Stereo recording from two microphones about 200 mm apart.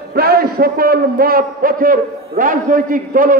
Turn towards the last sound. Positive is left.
turn(degrees=-45)  # may be behind; listen again after turning